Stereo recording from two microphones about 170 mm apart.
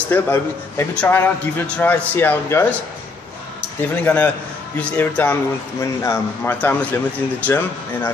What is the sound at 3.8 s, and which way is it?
Speech, 10° left (ahead or behind).